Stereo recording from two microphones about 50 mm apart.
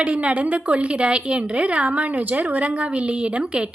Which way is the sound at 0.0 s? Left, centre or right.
Right.